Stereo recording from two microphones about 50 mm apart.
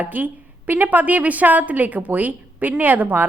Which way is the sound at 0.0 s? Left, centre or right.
Right.